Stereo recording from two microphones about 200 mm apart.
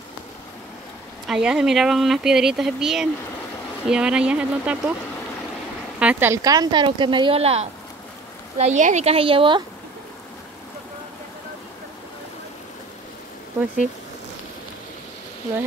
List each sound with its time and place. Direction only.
1.2 s speech: centre (ahead or behind)
5.9 s speech: 10° right (ahead or behind); by 9.6 s 25° right (ahead or behind)